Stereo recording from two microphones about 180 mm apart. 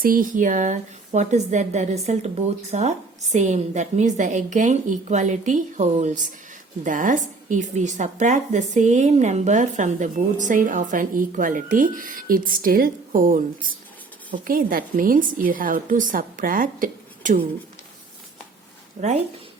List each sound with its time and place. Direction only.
0.0 s a woman's voice: 50° right (ahead or behind)
19.0 s a woman's voice: 40° right (ahead or behind)